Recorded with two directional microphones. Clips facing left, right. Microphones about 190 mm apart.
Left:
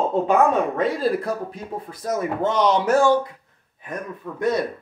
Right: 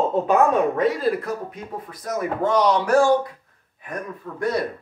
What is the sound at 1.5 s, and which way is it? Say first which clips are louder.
Speech: left 2 dB; 30° left (ahead or behind).